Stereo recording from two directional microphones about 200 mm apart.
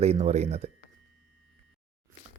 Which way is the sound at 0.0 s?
30° right (ahead or behind).